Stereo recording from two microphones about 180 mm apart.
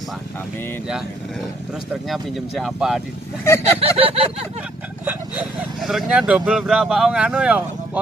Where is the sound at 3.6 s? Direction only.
30° right (ahead or behind).